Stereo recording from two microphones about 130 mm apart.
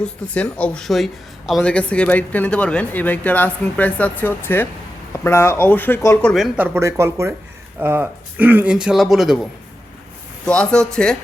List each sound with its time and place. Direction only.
0.0 s speech: 10° left (ahead or behind)
1.6 s speech: 10° left (ahead or behind)
6.2 s speech: centre (ahead or behind)
6.6 s speech: 20° right (ahead or behind); by 11.2 s 5° left (ahead or behind)